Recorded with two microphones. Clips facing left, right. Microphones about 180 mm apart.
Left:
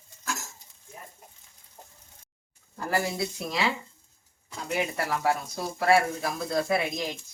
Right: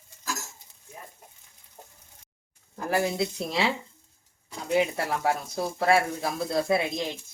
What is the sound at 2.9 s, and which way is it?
Speech, 20° right (ahead or behind).